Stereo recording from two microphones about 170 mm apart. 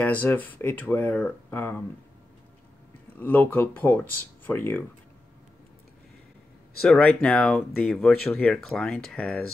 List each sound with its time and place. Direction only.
0.0 s speech: 10° left (ahead or behind)
3.2 s speech: 10° left (ahead or behind)
6.8 s speech: 5° left (ahead or behind)